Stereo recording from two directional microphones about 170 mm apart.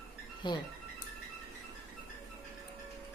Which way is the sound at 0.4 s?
25° left (ahead or behind).